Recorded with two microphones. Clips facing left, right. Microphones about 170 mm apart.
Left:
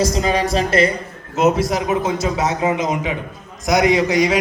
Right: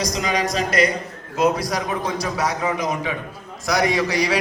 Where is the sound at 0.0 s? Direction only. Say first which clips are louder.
Left 5 dB; 30° left (ahead or behind).